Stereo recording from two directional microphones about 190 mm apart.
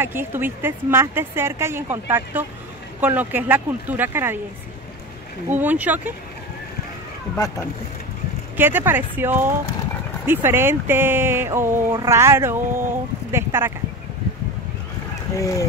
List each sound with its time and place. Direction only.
0.0 s speech: 10° right (ahead or behind)
5.5 s speech: 10° right (ahead or behind)
8.5 s speech: 10° right (ahead or behind)
15.3 s speech: 15° left (ahead or behind)